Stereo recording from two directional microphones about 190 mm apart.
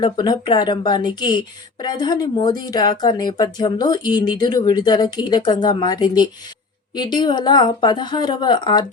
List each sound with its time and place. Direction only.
0.0 s a woman's voice: 20° left (ahead or behind)